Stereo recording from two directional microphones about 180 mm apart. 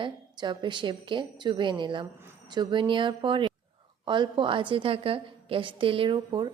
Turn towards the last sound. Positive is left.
turn(degrees=-25)  # may be behind; listen again after turning